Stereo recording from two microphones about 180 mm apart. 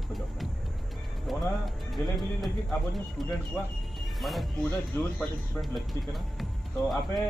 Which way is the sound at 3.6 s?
10° left (ahead or behind).